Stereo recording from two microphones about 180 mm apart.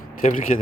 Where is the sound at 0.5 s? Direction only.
35° left (ahead or behind).